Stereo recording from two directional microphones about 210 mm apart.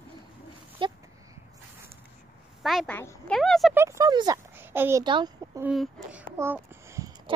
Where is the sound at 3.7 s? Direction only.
15° right (ahead or behind).